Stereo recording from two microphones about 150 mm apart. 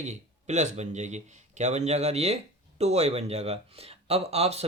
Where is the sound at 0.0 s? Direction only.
50° right (ahead or behind).